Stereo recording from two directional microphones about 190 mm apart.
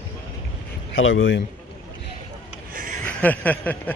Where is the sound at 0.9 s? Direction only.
90° left.